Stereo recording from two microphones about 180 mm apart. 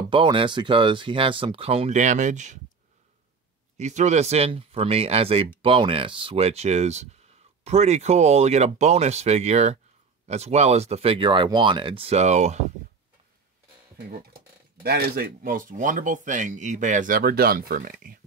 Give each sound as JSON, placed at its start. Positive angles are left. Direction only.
{"t": 0.1, "sound": "speech", "side_deg": -25}
{"t": 3.7, "sound": "speech", "side_deg": -40}
{"t": 13.9, "sound": "speech", "side_deg": -55}